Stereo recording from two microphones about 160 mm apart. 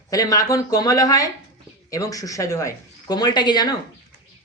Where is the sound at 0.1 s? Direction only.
20° left (ahead or behind).